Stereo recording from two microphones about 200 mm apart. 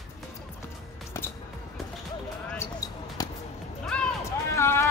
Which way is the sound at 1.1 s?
15° left (ahead or behind).